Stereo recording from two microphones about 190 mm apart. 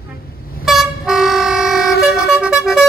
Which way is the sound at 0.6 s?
Centre (ahead or behind).